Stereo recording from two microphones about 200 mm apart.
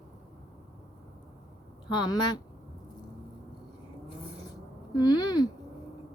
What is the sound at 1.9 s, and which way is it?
Speech, 20° left (ahead or behind).